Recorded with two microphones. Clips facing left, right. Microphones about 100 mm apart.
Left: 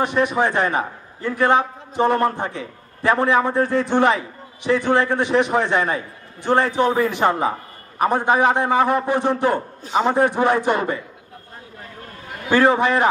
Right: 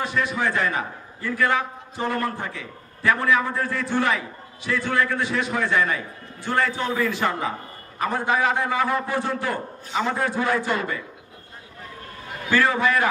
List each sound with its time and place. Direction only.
0.0 s a man's voice: 20° left (ahead or behind)
12.4 s a man's voice: 25° left (ahead or behind)